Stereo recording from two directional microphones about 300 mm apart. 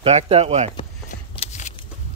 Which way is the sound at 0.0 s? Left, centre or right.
Right.